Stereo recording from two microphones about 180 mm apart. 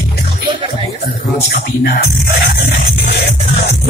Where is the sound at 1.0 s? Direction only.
55° left (ahead or behind).